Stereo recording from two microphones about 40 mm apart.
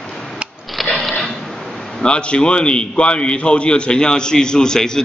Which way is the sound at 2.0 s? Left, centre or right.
Left.